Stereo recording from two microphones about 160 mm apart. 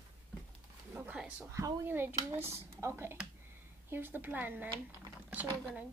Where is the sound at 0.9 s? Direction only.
10° right (ahead or behind).